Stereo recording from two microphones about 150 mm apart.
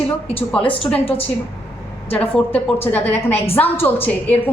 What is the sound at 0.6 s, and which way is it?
Speech, 40° left (ahead or behind).